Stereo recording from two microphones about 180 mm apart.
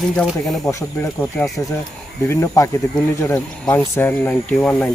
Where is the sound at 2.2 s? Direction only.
15° left (ahead or behind).